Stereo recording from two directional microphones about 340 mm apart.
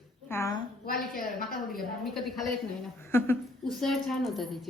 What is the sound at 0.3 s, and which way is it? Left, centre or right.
Speech, centre.